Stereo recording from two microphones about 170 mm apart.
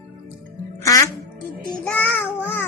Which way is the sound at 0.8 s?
20° left (ahead or behind).